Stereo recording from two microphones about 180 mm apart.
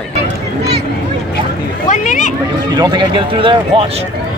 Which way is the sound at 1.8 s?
45° left (ahead or behind).